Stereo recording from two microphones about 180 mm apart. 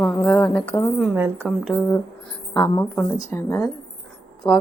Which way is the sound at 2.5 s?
10° left (ahead or behind).